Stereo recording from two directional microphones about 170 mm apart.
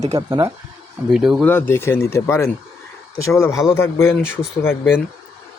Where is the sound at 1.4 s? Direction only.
15° left (ahead or behind).